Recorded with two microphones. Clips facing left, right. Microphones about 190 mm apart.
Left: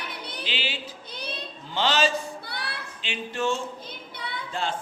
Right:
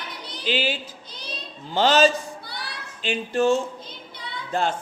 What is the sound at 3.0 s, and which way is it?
Speech, 40° right (ahead or behind).